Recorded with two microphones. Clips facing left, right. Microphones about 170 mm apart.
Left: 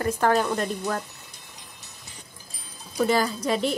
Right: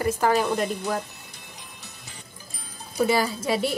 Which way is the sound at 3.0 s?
5° right (ahead or behind).